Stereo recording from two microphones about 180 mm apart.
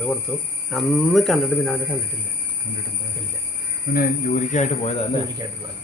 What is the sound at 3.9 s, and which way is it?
Speech, 55° left (ahead or behind).